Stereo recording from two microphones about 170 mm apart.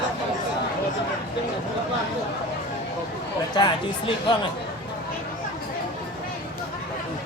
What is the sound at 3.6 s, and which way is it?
Speech, 30° left (ahead or behind).